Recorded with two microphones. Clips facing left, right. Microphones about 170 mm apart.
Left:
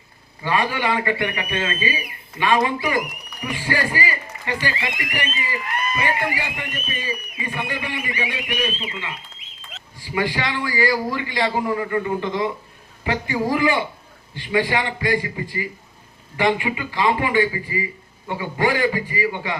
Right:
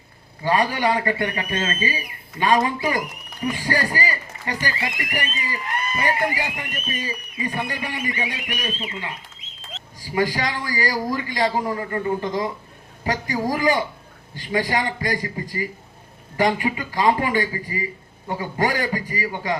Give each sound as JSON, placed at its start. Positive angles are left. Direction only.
{"t": 0.4, "sound": "speech", "side_deg": -40}